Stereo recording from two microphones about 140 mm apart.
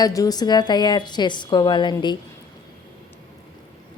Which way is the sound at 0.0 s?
25° left (ahead or behind).